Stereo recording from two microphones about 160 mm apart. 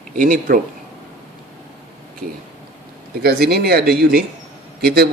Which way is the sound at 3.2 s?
80° right.